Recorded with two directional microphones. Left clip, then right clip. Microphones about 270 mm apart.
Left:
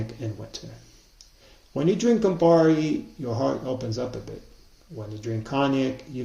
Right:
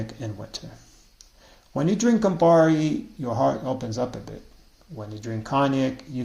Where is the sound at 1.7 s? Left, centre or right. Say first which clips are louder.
Left 1 dB; centre.